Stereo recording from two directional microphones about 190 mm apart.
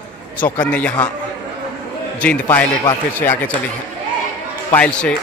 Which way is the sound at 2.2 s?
5° left (ahead or behind).